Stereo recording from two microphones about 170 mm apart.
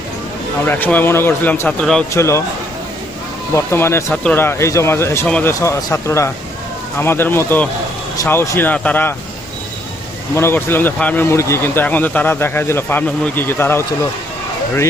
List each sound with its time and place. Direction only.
0.6 s speech: 10° left (ahead or behind)
2.1 s speech: 15° left (ahead or behind)
3.5 s speech: 15° left (ahead or behind)
10.3 s speech: 15° left (ahead or behind)